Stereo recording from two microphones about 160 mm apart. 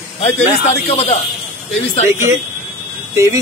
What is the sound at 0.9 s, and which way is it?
A man's voice, 40° left (ahead or behind).